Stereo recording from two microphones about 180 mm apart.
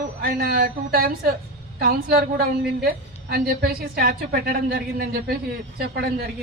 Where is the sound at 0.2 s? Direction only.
60° right (ahead or behind).